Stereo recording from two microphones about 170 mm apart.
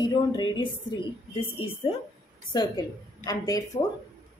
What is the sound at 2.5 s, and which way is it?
A woman's voice, 20° left (ahead or behind).